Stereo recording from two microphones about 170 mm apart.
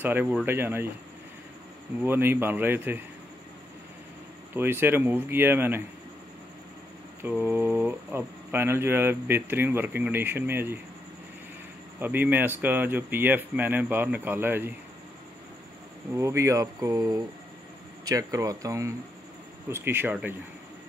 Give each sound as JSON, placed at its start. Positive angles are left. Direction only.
{"t": 0.0, "sound": "speech", "side_deg": -10}
{"t": 2.0, "sound": "speech", "side_deg": -10}
{"t": 4.6, "sound": "speech", "side_deg": -10}
{"t": 7.2, "sound": "speech", "side_deg": -10}
{"t": 12.0, "sound": "speech", "side_deg": -10}
{"t": 16.2, "sound": "speech", "side_deg": -15}